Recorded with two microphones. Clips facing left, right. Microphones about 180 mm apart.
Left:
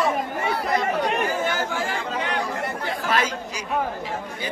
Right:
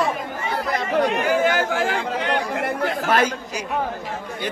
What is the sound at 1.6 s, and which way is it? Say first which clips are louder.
Speech: right 5 dB; 90° right.